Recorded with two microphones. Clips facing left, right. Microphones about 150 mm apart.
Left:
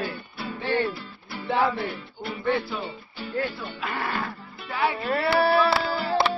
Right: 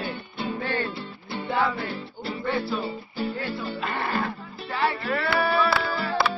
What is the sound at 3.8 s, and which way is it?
Speech, 10° left (ahead or behind).